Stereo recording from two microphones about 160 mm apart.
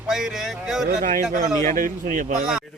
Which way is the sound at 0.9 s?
50° right (ahead or behind).